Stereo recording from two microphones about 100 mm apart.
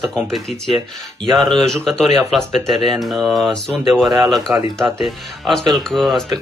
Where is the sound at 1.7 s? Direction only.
5° left (ahead or behind).